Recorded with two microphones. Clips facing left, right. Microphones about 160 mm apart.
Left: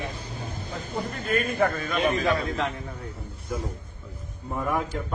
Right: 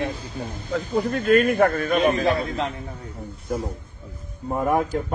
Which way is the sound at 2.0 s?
35° right (ahead or behind).